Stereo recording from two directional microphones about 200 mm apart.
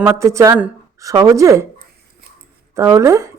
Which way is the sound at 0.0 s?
15° right (ahead or behind).